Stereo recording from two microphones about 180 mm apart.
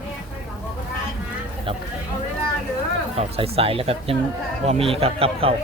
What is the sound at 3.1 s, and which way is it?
Speech, 35° right (ahead or behind).